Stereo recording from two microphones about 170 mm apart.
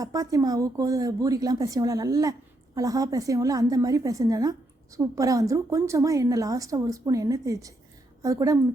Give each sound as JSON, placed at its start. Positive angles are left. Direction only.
{"t": 0.0, "sound": "a woman's voice", "side_deg": -20}